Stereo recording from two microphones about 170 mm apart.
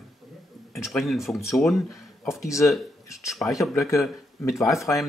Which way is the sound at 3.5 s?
Centre (ahead or behind).